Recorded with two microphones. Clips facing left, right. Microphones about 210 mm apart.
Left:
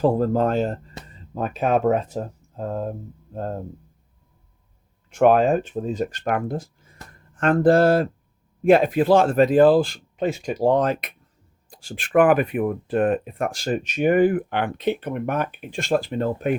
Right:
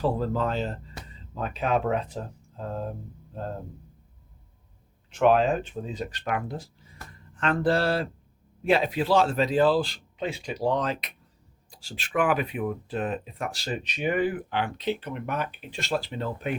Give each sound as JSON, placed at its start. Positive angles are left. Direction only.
{"t": 0.0, "sound": "speech", "side_deg": 50}
{"t": 5.1, "sound": "speech", "side_deg": 50}